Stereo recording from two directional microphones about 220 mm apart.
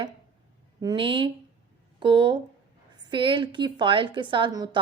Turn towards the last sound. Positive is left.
turn(degrees=-20)  # may be behind; listen again after turning